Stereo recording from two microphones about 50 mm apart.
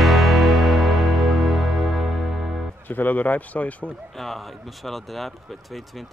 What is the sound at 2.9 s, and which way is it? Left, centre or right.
Speech, left.